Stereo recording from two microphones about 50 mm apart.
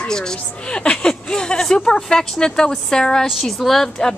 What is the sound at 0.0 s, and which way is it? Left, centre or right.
A woman's voice, centre.